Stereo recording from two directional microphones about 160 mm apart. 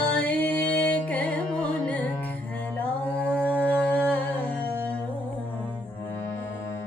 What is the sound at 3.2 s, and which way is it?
Music, 10° left (ahead or behind).